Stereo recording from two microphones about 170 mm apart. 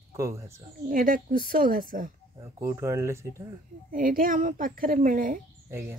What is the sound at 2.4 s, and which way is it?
Speech, 20° right (ahead or behind).